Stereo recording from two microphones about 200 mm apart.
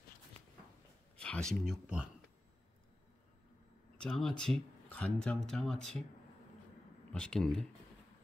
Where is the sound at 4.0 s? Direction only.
5° left (ahead or behind).